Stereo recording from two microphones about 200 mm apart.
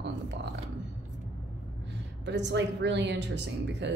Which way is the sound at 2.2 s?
60° right (ahead or behind).